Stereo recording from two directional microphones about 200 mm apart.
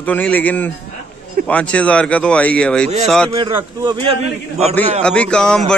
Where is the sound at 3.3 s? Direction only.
25° right (ahead or behind).